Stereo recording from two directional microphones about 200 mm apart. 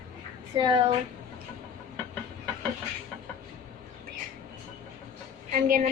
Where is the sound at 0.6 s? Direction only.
20° right (ahead or behind).